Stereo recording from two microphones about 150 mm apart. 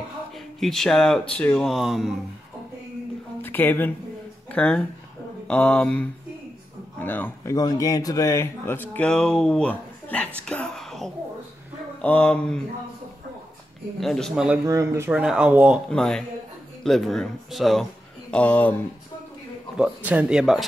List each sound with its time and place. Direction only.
0.6 s speech: centre (ahead or behind)
3.4 s speech: 15° left (ahead or behind)
7.5 s speech: 25° left (ahead or behind)
8.9 s speech: 5° left (ahead or behind)
13.9 s speech: centre (ahead or behind)
14.7 s speech: 20° right (ahead or behind)
15.9 s speech: 5° left (ahead or behind)
19.8 s speech: 10° right (ahead or behind)